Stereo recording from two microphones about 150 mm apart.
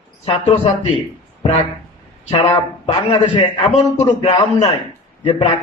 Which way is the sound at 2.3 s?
45° left (ahead or behind).